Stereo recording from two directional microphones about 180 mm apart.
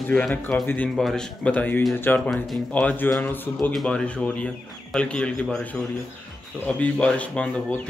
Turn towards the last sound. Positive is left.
turn(degrees=5)  # may be behind; listen again after turning